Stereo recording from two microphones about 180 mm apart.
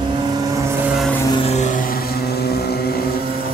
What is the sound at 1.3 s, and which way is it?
Vehicle, 35° left (ahead or behind).